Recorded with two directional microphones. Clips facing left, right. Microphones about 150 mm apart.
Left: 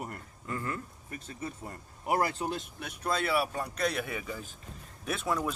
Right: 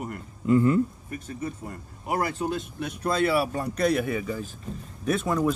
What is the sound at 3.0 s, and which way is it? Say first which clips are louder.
Speech: right 6 dB; centre (ahead or behind).